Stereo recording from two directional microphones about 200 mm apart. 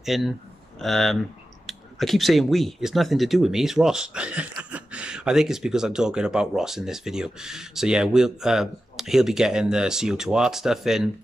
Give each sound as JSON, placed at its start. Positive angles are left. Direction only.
{"t": 0.0, "sound": "speech", "side_deg": 0}